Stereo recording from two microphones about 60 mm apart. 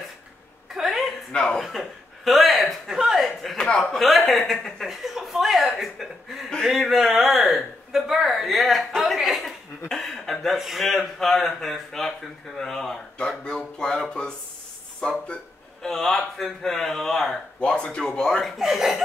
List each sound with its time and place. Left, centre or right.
0.7 s a sound: centre
1.3 s speech: centre
1.6 s a man's voice: centre
3.9 s a man's voice: centre
17.6 s speech: centre
18.6 s a man's voice: centre